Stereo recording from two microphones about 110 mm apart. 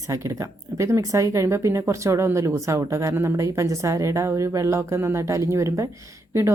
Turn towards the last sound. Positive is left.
turn(degrees=-25)  # may be behind; listen again after turning